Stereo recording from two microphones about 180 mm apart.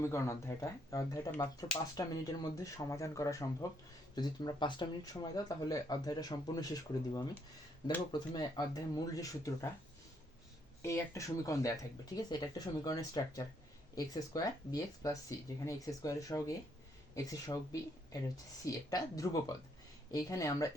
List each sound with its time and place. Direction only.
0.0 s speech: 15° left (ahead or behind)
10.8 s speech: 15° left (ahead or behind)